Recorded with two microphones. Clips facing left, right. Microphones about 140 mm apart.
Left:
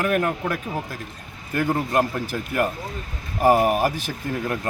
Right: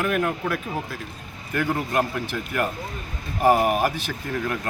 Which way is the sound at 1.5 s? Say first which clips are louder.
Left 2 dB; 40° left (ahead or behind).